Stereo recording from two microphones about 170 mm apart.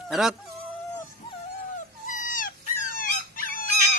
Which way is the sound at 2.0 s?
50° left (ahead or behind).